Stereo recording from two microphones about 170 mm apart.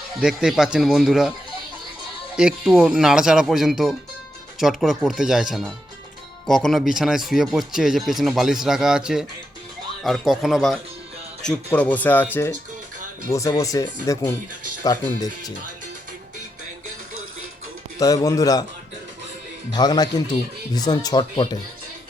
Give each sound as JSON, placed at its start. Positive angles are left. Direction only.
{"t": 0.2, "sound": "speech", "side_deg": -5}
{"t": 2.3, "sound": "speech", "side_deg": -5}
{"t": 18.0, "sound": "speech", "side_deg": 20}
{"t": 19.7, "sound": "speech", "side_deg": 25}